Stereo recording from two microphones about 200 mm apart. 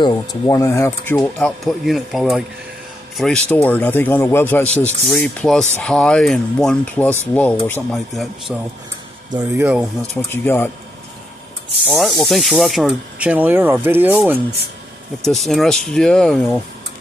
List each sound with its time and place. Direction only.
0.0 s speech: 20° left (ahead or behind); by 8.3 s centre (ahead or behind)
9.3 s speech: 20° right (ahead or behind)
9.7 s speech: 5° right (ahead or behind)
10.3 s speech: 10° left (ahead or behind)
11.9 s speech: centre (ahead or behind)